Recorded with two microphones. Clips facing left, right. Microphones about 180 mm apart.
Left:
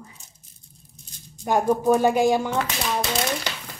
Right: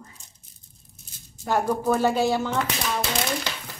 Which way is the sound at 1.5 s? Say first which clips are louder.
Left 4 dB; 15° left (ahead or behind).